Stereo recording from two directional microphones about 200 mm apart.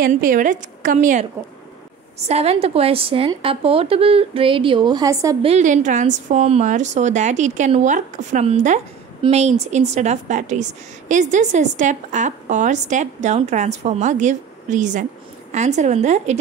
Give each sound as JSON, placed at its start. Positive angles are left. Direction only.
{"t": 0.0, "sound": "a woman's voice", "side_deg": -40}
{"t": 2.2, "sound": "a woman's voice", "side_deg": -30}
{"t": 5.4, "sound": "a woman's voice", "side_deg": -35}